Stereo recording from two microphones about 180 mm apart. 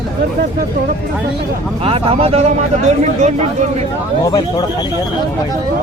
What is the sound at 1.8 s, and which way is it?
Speech, 30° right (ahead or behind).